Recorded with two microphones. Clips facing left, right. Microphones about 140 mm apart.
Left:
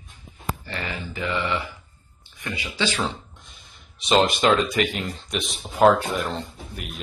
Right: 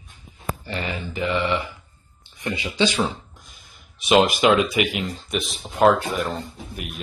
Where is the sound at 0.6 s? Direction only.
20° right (ahead or behind).